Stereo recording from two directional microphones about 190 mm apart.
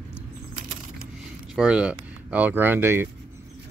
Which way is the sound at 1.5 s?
5° right (ahead or behind).